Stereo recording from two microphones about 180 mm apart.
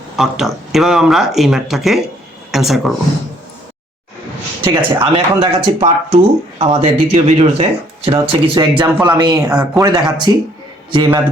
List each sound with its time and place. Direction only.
0.2 s speech: centre (ahead or behind)
4.7 s speech: 30° right (ahead or behind)